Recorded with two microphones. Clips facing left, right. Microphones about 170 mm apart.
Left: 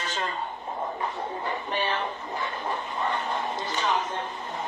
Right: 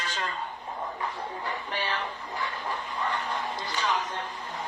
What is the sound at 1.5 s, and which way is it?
Music, 20° left (ahead or behind).